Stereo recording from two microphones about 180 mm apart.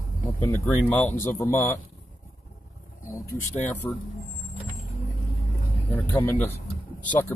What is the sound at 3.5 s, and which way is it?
Speech, 40° left (ahead or behind).